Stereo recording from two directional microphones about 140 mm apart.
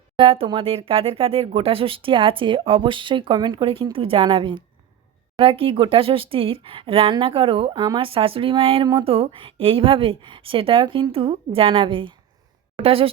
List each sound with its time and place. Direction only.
0.2 s speech: 35° right (ahead or behind)